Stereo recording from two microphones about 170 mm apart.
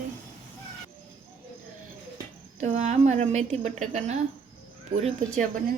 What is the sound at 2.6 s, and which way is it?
Speech, 45° right (ahead or behind).